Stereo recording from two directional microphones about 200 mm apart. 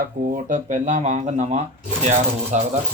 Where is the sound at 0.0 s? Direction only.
45° right (ahead or behind).